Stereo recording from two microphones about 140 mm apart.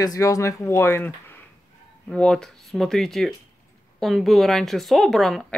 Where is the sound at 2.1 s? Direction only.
5° left (ahead or behind).